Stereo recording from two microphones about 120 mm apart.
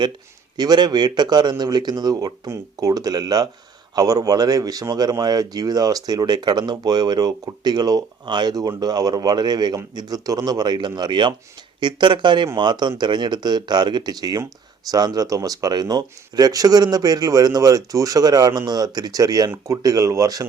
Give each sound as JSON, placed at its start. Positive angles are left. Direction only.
{"t": 0.5, "sound": "speech", "side_deg": -35}